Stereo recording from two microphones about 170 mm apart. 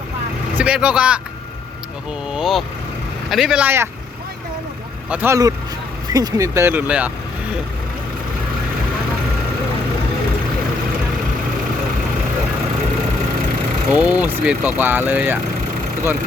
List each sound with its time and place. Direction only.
0.5 s speech: 5° right (ahead or behind)
2.3 s speech: centre (ahead or behind)
5.0 s speech: 10° right (ahead or behind)
13.9 s speech: 10° right (ahead or behind)